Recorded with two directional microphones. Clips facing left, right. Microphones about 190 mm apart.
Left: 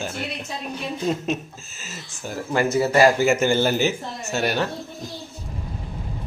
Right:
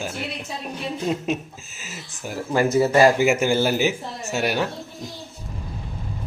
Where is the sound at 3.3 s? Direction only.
5° right (ahead or behind).